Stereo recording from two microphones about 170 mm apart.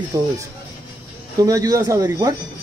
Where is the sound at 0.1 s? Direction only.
20° right (ahead or behind).